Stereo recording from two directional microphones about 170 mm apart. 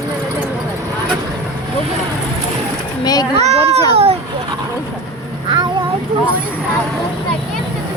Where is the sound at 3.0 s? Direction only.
25° left (ahead or behind).